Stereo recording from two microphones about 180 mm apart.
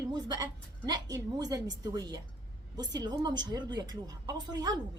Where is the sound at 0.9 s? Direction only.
20° right (ahead or behind).